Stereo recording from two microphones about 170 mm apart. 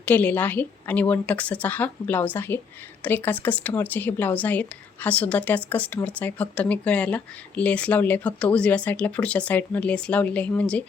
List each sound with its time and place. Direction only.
0.0 s speech: 10° left (ahead or behind)